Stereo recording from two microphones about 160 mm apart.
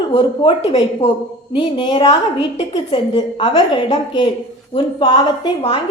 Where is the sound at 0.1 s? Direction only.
35° left (ahead or behind).